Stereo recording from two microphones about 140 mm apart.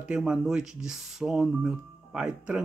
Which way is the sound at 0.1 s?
5° right (ahead or behind).